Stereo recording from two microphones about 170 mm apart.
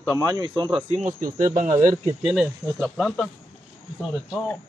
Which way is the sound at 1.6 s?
15° right (ahead or behind).